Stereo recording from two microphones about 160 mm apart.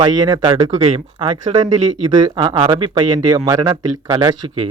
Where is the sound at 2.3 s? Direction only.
25° right (ahead or behind).